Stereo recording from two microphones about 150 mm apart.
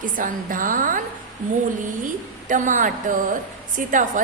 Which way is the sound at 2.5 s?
55° right (ahead or behind).